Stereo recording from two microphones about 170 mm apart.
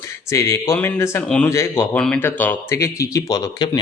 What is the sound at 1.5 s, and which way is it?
A man's voice, 15° left (ahead or behind).